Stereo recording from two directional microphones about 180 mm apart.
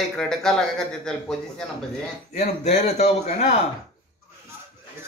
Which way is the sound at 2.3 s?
35° left (ahead or behind).